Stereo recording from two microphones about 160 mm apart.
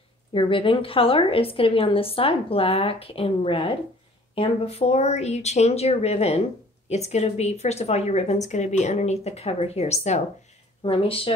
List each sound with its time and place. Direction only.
0.3 s a woman's voice: 35° left (ahead or behind)